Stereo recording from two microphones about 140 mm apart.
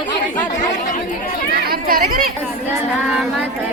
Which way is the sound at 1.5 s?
90° right.